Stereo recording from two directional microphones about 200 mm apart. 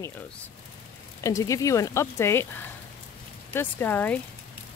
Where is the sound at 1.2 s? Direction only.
15° left (ahead or behind).